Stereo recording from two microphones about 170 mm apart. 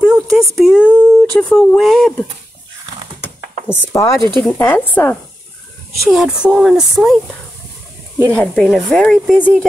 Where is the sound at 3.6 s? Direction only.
15° left (ahead or behind).